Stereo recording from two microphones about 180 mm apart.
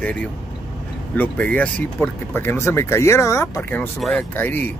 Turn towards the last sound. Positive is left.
turn(degrees=10)  # may be behind; listen again after turning